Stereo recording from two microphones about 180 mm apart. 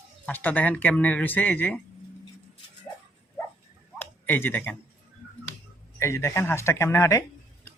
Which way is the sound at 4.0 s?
10° left (ahead or behind).